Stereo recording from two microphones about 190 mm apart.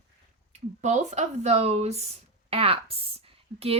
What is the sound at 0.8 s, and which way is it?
Speech, 40° right (ahead or behind).